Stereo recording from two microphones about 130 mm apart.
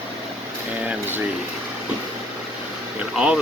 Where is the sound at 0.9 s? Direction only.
15° right (ahead or behind).